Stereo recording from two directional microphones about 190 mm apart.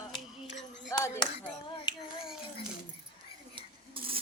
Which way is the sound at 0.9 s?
15° left (ahead or behind).